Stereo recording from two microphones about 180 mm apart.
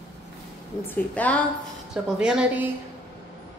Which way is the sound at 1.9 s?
5° right (ahead or behind).